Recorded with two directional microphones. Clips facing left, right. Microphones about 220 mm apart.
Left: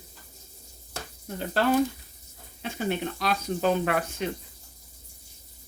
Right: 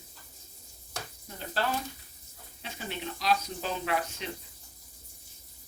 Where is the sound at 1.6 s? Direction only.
55° left (ahead or behind).